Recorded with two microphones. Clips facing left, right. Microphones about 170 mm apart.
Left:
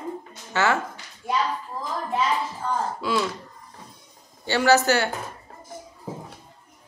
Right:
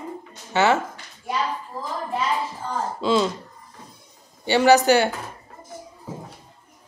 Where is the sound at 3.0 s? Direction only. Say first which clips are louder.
Right 7 dB; 25° right (ahead or behind).